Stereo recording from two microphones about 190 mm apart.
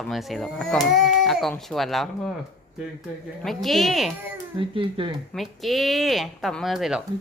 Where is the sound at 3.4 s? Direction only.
Centre (ahead or behind).